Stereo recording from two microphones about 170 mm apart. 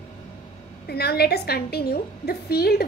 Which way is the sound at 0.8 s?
70° left (ahead or behind).